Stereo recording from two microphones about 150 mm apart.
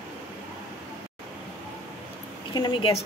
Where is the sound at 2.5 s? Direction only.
30° left (ahead or behind).